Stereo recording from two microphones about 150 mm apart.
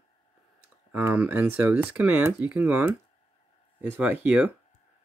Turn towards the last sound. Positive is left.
turn(degrees=-10)  # may be behind; listen again after turning